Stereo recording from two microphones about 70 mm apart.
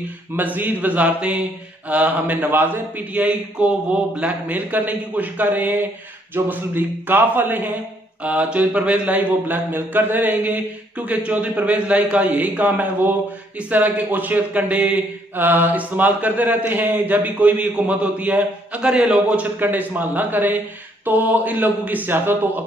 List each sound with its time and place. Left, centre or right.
0.4 s a man's voice: right; by 19.3 s centre
19.3 s a man's voice: right